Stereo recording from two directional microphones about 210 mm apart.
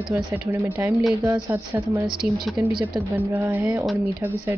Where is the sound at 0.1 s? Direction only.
10° right (ahead or behind).